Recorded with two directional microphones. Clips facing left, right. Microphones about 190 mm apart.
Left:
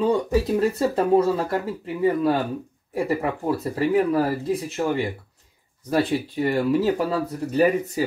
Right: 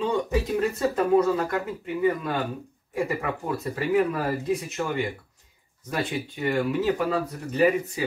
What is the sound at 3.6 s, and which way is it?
Speech, 35° left (ahead or behind).